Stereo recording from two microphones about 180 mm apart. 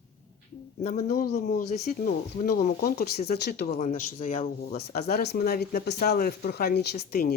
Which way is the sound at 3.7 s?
45° left (ahead or behind).